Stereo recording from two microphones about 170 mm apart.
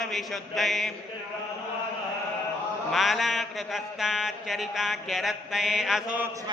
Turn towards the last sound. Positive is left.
turn(degrees=-5)  # may be behind; listen again after turning